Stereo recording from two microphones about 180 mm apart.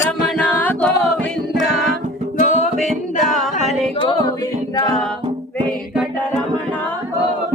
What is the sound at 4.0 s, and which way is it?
Music, 25° left (ahead or behind).